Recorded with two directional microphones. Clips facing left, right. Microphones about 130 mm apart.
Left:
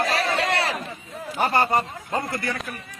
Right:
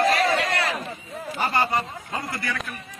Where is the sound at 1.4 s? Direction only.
50° left (ahead or behind).